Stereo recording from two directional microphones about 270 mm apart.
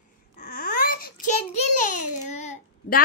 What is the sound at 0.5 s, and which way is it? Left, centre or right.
Babbling, left.